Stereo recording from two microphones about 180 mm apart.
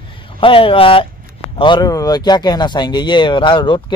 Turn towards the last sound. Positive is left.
turn(degrees=25)  # may be behind; listen again after turning